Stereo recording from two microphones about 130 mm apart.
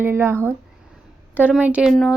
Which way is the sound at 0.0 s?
20° right (ahead or behind).